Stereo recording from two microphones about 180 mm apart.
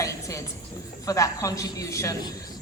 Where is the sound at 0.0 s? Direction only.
15° left (ahead or behind).